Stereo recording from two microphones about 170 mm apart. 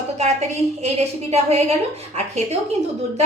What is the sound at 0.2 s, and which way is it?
A woman's voice, 40° right (ahead or behind).